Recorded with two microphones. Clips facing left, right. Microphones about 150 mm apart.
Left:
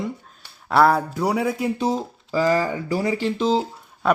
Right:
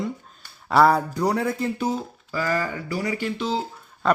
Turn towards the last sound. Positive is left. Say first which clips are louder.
# left 1 dB
turn(degrees=5)  # may be behind; listen again after turning